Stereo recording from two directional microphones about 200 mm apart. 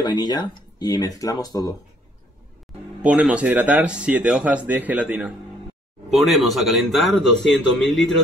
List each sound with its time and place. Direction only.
0.0 s speech: 20° left (ahead or behind)
3.0 s speech: 5° right (ahead or behind)